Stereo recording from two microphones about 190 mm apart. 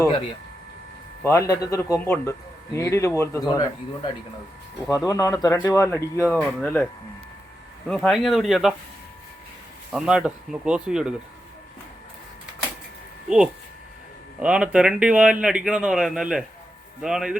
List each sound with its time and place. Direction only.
1.2 s speech: 15° left (ahead or behind)
7.9 s speech: 5° left (ahead or behind)
9.9 s speech: 5° right (ahead or behind)
13.2 s speech: 5° right (ahead or behind)